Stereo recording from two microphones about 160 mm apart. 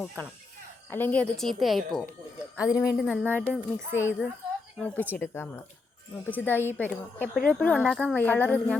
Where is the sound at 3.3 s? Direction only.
15° right (ahead or behind).